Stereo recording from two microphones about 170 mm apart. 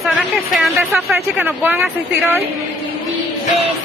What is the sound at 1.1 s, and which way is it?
Speech, 10° right (ahead or behind).